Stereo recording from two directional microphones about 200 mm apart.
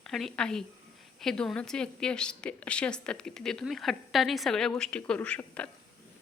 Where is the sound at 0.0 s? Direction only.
Centre (ahead or behind).